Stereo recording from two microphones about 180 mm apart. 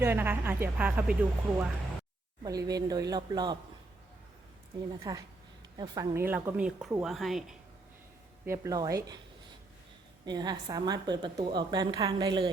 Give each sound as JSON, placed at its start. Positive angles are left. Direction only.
{"t": 0.0, "sound": "speech", "side_deg": -10}
{"t": 2.4, "sound": "speech", "side_deg": -20}
{"t": 5.1, "sound": "speech", "side_deg": -20}
{"t": 8.4, "sound": "speech", "side_deg": -15}
{"t": 10.2, "sound": "speech", "side_deg": -20}